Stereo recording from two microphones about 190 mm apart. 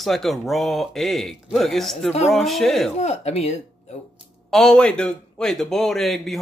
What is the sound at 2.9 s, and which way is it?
Speech, 35° left (ahead or behind).